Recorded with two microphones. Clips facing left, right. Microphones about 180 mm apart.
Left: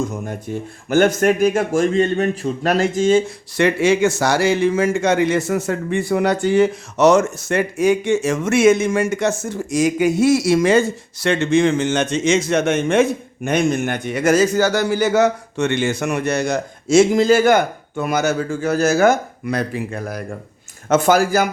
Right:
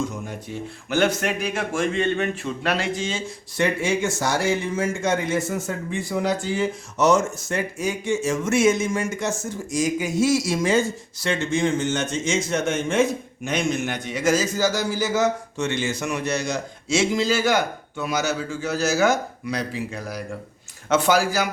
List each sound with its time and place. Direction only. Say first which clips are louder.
0.9 s a man's voice: left 7 dB; 45° left (ahead or behind)
3.6 s a man's voice: left 7 dB; 80° left; by 21.5 s 50° left (ahead or behind)